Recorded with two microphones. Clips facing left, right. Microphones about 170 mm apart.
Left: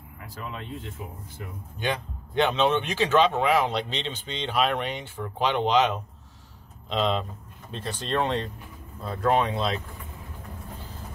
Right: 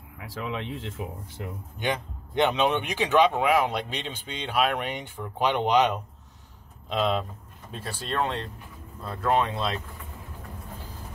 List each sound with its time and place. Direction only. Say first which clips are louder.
0.2 s speech: right 5 dB; 90° right
1.8 s a man's voice: even; 20° right (ahead or behind); by 9.8 s centre (ahead or behind)